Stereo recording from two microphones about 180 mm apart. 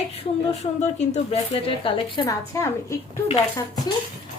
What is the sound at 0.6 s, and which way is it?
Speech, 35° left (ahead or behind).